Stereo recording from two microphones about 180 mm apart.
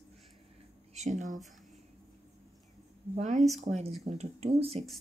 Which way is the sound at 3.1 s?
40° right (ahead or behind).